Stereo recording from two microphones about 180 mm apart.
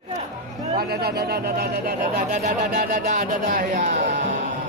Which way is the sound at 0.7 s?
60° right (ahead or behind).